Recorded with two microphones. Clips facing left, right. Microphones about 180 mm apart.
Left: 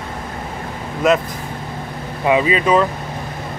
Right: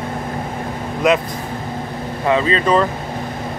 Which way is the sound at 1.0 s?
Centre (ahead or behind).